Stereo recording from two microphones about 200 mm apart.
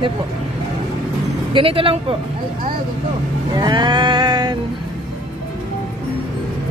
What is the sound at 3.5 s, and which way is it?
Livestock, 20° right (ahead or behind).